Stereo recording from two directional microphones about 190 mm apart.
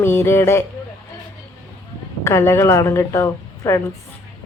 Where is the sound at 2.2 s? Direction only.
15° left (ahead or behind).